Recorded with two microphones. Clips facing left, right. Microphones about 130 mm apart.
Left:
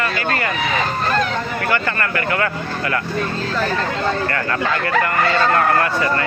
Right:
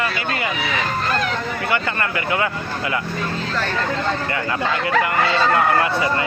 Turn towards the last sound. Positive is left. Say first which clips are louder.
# left 1 dB
turn(degrees=-15)  # may be behind; listen again after turning